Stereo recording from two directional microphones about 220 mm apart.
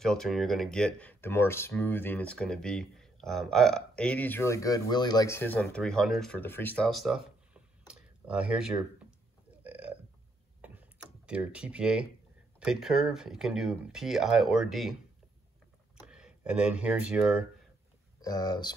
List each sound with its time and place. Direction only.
0.0 s speech: centre (ahead or behind)
9.6 s burping: 5° right (ahead or behind)
10.6 s computer keyboard: 10° right (ahead or behind)
12.5 s speech: centre (ahead or behind)
16.0 s speech: 5° right (ahead or behind)
18.2 s speech: 15° left (ahead or behind)